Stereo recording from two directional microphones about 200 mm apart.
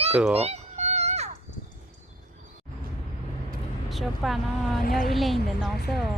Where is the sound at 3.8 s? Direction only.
Centre (ahead or behind).